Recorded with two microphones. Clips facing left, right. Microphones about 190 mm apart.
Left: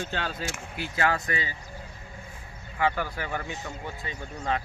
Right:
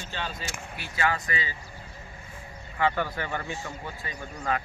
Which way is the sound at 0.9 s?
50° left (ahead or behind).